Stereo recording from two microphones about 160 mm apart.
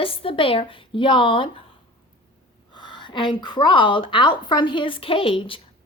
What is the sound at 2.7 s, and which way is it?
A woman's voice, 30° left (ahead or behind).